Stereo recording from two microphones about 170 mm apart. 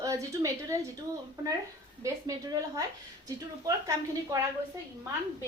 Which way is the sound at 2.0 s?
20° right (ahead or behind).